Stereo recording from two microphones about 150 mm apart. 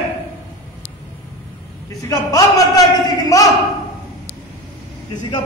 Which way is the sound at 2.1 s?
25° left (ahead or behind).